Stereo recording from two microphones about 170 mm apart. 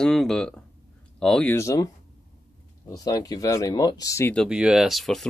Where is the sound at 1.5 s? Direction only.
20° left (ahead or behind).